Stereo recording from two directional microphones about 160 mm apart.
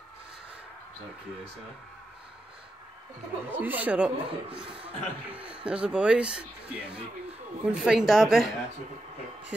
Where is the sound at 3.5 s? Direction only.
10° right (ahead or behind).